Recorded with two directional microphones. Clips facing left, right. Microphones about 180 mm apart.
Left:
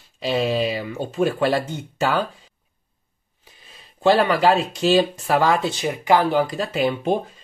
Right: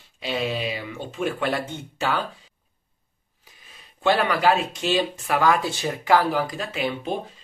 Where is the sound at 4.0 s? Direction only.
30° left (ahead or behind).